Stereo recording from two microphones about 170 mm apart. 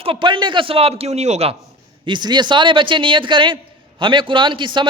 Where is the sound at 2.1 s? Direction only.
25° right (ahead or behind).